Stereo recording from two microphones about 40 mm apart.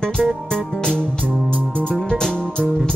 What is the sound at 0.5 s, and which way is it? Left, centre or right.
Music, centre.